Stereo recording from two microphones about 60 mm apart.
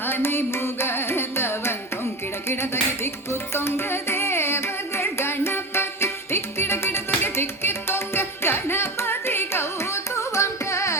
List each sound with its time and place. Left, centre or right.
0.0 s carnatic music: left
2.5 s music: left